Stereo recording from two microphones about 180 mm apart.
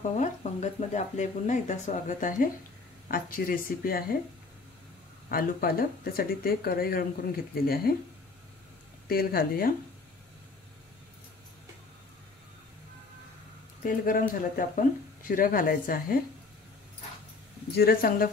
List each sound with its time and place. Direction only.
0.1 s speech: 40° left (ahead or behind)
5.3 s speech: 55° left (ahead or behind)
9.0 s speech: 55° left (ahead or behind)
13.8 s speech: 50° left (ahead or behind)
17.6 s speech: 60° left (ahead or behind)